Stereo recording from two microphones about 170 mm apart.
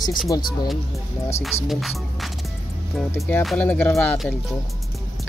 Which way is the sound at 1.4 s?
Centre (ahead or behind).